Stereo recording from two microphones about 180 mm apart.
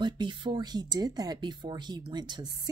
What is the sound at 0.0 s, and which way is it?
Speech, 25° right (ahead or behind).